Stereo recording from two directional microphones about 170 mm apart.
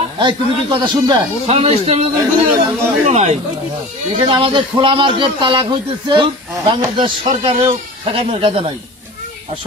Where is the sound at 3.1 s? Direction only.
40° right (ahead or behind).